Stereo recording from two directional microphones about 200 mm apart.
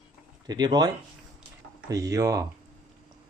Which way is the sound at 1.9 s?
15° right (ahead or behind).